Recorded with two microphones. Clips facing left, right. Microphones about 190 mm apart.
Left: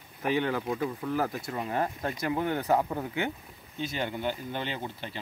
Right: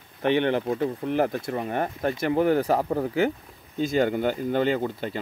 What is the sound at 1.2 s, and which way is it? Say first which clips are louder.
Speech: right 6 dB; 55° right (ahead or behind).